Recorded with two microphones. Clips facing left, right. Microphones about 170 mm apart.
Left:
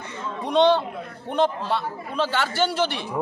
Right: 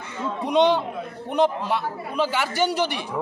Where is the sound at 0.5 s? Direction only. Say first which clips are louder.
Left 1 dB; 15° right (ahead or behind).